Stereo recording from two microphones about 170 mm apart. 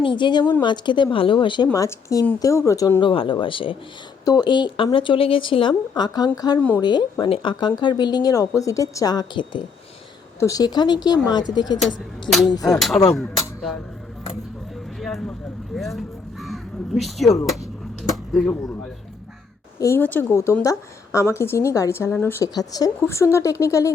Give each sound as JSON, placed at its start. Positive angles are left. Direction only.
{"t": 0.0, "sound": "speech", "side_deg": 30}
{"t": 6.6, "sound": "a woman's voice", "side_deg": 10}
{"t": 6.8, "sound": "speech", "side_deg": 25}
{"t": 12.3, "sound": "speech", "side_deg": 0}
{"t": 13.1, "sound": "music", "side_deg": 0}
{"t": 14.9, "sound": "a sound", "side_deg": 0}
{"t": 15.7, "sound": "crow", "side_deg": 0}
{"t": 18.1, "sound": "a sound", "side_deg": 0}
{"t": 19.8, "sound": "a woman's voice", "side_deg": 15}